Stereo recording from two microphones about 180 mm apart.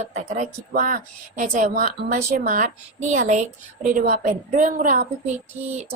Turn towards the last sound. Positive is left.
turn(degrees=-35)  # may be behind; listen again after turning